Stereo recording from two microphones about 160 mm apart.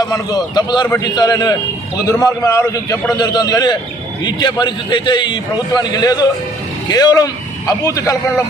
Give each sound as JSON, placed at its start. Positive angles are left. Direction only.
{"t": 0.1, "sound": "a man's voice", "side_deg": 25}